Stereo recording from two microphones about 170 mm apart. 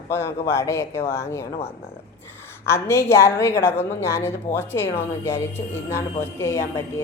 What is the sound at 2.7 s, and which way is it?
A woman's voice, 15° left (ahead or behind).